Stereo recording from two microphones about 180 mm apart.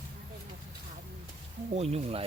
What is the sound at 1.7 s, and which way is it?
Speech, 35° right (ahead or behind).